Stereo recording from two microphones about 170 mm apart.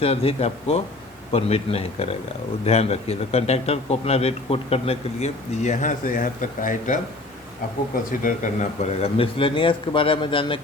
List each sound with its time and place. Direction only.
0.0 s a man's voice: 35° left (ahead or behind)